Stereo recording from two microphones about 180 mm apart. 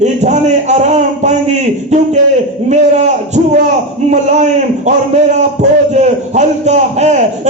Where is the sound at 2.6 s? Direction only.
40° right (ahead or behind).